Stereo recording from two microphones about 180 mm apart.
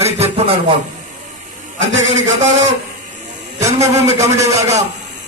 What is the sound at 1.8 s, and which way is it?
Speech, 90° right.